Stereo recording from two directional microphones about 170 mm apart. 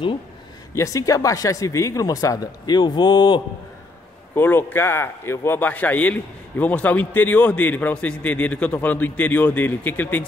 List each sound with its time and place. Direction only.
0.7 s speech: 20° left (ahead or behind)
4.4 s a man's voice: 10° left (ahead or behind)